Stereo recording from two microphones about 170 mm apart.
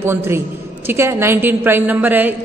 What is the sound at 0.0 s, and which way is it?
A woman's voice, 15° right (ahead or behind).